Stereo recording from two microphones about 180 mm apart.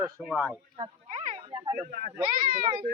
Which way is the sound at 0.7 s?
35° right (ahead or behind).